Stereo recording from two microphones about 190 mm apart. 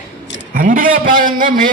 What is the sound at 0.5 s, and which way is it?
A man's voice, 45° right (ahead or behind).